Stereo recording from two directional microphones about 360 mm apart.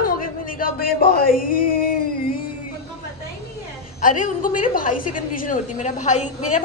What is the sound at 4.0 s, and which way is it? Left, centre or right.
A woman's voice, left.